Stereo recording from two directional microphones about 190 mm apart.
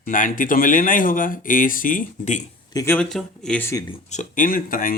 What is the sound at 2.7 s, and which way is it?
Speech, 10° left (ahead or behind).